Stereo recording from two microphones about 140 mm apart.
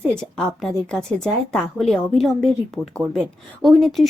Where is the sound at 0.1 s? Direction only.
5° left (ahead or behind).